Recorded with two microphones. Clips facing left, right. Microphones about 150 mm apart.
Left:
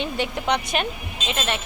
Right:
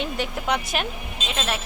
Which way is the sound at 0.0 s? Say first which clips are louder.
Left 2 dB; centre (ahead or behind).